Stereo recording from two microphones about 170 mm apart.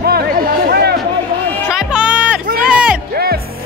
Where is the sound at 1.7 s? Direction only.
5° right (ahead or behind).